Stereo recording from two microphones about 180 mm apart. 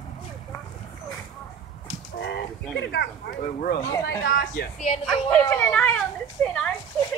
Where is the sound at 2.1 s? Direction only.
65° left (ahead or behind).